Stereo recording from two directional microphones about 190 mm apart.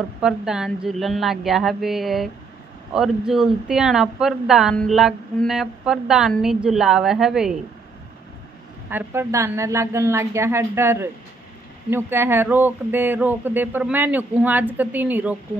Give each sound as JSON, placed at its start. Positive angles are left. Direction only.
{"t": 0.2, "sound": "speech", "side_deg": -5}
{"t": 8.9, "sound": "speech", "side_deg": -10}